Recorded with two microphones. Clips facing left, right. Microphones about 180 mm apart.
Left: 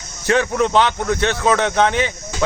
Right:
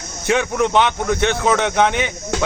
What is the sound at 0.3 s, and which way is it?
Speech, 10° right (ahead or behind).